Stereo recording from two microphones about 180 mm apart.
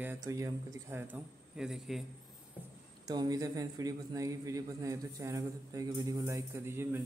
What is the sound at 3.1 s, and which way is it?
A man's voice, 20° right (ahead or behind).